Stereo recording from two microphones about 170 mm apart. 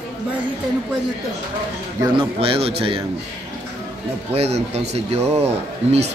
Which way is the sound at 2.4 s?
35° right (ahead or behind).